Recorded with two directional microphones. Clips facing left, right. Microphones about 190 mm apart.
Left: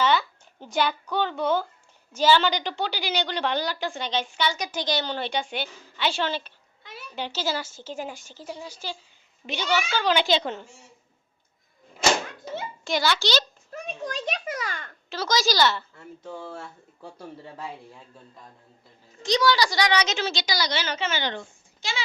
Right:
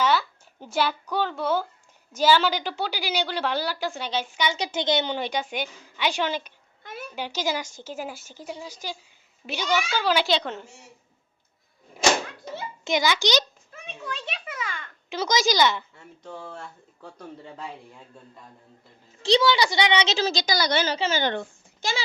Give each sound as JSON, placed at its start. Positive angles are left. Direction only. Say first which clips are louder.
{"t": 0.0, "sound": "a child's voice", "louder": "even", "side_deg": -5}
{"t": 4.5, "sound": "a woman's voice", "louder": "right 3 dB", "side_deg": -25}
{"t": 6.8, "sound": "a sound", "louder": "right 6 dB", "side_deg": -50}
{"t": 7.2, "sound": "a woman's voice", "louder": "even", "side_deg": -10}
{"t": 12.8, "sound": "a woman's voice", "louder": "right 2 dB", "side_deg": -15}
{"t": 13.7, "sound": "a child's voice", "louder": "left 4 dB", "side_deg": 40}
{"t": 15.1, "sound": "a woman's voice", "louder": "right 1 dB", "side_deg": -20}
{"t": 16.2, "sound": "speech", "louder": "left 1 dB", "side_deg": 5}
{"t": 19.2, "sound": "a woman's voice", "louder": "right 2 dB", "side_deg": -25}
{"t": 20.8, "sound": "a woman's voice", "louder": "right 4 dB", "side_deg": -35}
{"t": 21.2, "sound": "a woman's voice", "louder": "right 5 dB", "side_deg": -50}